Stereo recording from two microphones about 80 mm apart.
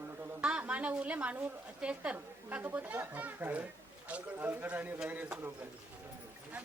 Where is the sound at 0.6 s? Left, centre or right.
Centre.